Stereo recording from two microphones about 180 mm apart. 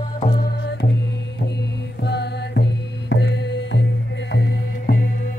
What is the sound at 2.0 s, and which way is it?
Music, 70° left (ahead or behind).